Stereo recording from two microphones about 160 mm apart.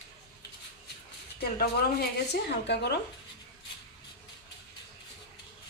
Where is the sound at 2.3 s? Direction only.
90° left.